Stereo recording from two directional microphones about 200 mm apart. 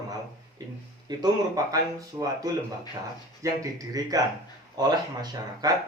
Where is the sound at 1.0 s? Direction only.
20° right (ahead or behind).